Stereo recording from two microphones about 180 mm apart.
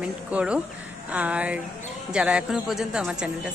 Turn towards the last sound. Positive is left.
turn(degrees=-5)  # may be behind; listen again after turning